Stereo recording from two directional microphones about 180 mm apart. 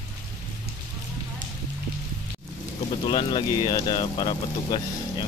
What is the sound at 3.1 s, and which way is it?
Speech, 25° left (ahead or behind).